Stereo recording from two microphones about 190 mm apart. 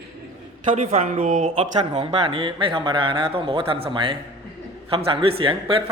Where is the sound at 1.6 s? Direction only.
30° right (ahead or behind).